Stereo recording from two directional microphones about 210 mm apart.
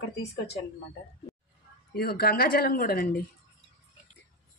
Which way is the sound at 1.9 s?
45° left (ahead or behind).